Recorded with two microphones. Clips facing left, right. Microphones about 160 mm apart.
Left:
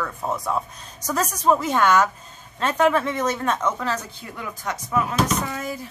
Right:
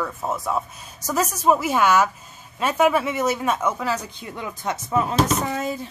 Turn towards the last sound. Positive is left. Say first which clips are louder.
# right 2 dB
turn(degrees=-25)  # may be behind; listen again after turning